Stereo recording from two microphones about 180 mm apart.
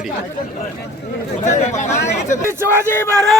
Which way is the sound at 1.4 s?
40° left (ahead or behind).